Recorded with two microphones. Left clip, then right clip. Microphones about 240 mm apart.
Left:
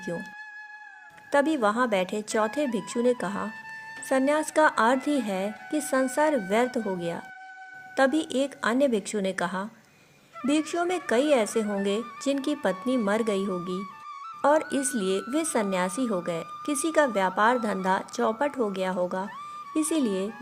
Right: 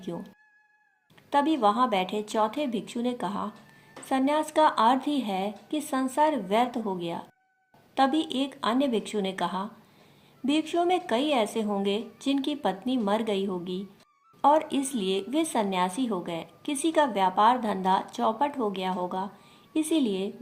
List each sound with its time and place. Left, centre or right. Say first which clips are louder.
0.0 s speech: left 4 dB; left
1.3 s speech: even; left